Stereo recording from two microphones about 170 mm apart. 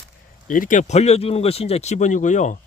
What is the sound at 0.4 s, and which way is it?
Speech, 50° left (ahead or behind).